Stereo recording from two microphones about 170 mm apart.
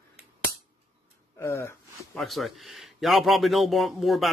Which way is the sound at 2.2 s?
Centre (ahead or behind).